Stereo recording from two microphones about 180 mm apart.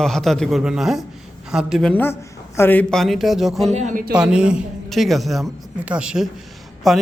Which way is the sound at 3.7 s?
45° right (ahead or behind).